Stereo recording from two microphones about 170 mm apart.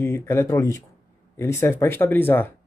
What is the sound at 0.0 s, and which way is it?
Speech, 15° left (ahead or behind).